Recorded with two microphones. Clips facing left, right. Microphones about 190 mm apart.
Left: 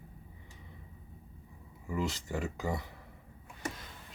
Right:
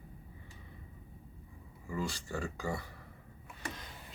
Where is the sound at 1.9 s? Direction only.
20° left (ahead or behind).